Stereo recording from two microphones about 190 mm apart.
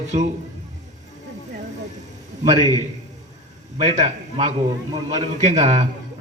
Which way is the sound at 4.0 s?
35° right (ahead or behind).